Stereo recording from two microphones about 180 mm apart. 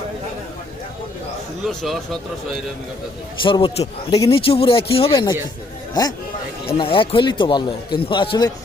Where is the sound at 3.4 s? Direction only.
30° left (ahead or behind).